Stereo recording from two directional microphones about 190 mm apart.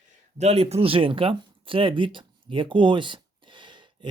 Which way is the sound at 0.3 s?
35° right (ahead or behind).